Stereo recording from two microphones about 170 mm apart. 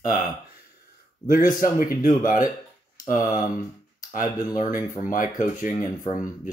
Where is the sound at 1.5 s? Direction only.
50° left (ahead or behind).